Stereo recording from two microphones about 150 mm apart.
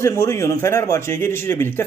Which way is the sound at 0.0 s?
20° left (ahead or behind).